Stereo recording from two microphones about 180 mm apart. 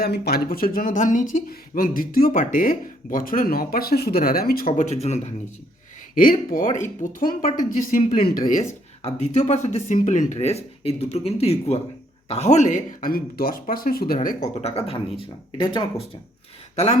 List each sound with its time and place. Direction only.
0.0 s speech: 60° left (ahead or behind); by 5.3 s 35° left (ahead or behind)
6.1 s speech: 50° left (ahead or behind)
14.6 s speech: 35° left (ahead or behind)